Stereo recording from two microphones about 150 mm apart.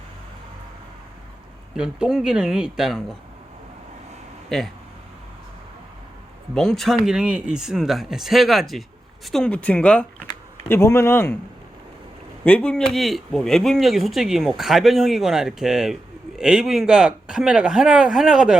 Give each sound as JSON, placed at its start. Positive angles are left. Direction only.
{"t": 1.7, "sound": "speech", "side_deg": -5}
{"t": 4.4, "sound": "speech", "side_deg": 0}
{"t": 6.5, "sound": "speech", "side_deg": 0}
{"t": 10.7, "sound": "speech", "side_deg": 20}
{"t": 12.5, "sound": "speech", "side_deg": 10}